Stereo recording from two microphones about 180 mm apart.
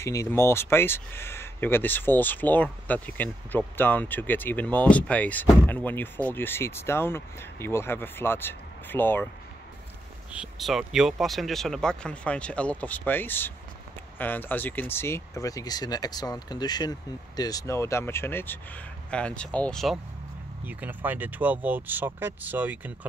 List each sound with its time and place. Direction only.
0.0 s speech: 15° left (ahead or behind)
10.3 s speech: 5° right (ahead or behind)
20.6 s speech: 10° right (ahead or behind)